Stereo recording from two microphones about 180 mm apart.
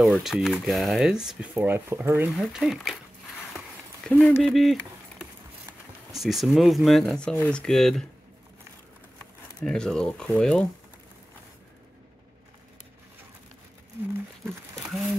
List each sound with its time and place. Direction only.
0.0 s speech: centre (ahead or behind)
3.5 s a sound: 5° left (ahead or behind)
6.1 s speech: centre (ahead or behind)
9.6 s speech: 5° left (ahead or behind)